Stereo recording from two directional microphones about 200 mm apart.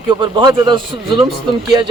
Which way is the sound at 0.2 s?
20° right (ahead or behind).